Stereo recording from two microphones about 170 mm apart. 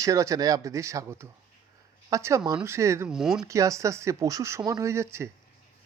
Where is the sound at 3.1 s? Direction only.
5° right (ahead or behind).